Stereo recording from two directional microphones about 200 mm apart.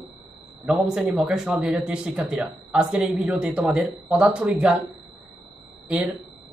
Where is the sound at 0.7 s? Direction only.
5° right (ahead or behind).